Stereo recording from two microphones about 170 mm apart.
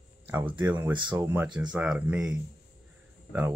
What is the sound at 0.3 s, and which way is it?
Speech, 10° right (ahead or behind).